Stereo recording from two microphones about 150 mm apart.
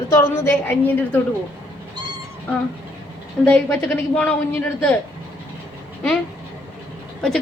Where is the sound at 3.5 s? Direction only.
10° left (ahead or behind).